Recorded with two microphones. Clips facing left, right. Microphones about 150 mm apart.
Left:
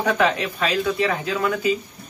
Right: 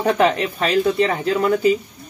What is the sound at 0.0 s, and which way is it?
Speech, 40° right (ahead or behind).